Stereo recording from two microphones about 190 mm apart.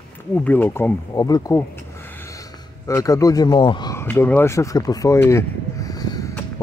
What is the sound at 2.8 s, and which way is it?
Speech, 15° left (ahead or behind).